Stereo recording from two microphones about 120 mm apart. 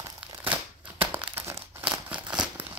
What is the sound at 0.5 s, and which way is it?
Crumpling, 15° right (ahead or behind).